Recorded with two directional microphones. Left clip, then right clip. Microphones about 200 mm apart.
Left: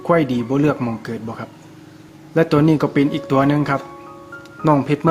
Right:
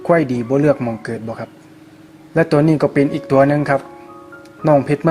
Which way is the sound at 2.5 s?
15° right (ahead or behind).